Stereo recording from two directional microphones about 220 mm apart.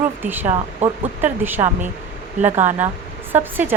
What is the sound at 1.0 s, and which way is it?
Speech, 10° right (ahead or behind).